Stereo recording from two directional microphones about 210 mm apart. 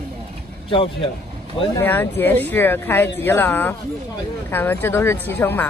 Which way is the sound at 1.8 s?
10° left (ahead or behind).